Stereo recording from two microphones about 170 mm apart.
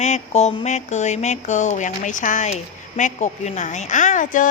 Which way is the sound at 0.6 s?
45° left (ahead or behind).